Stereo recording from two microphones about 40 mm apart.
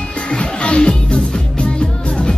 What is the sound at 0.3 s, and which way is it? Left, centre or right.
Music, left.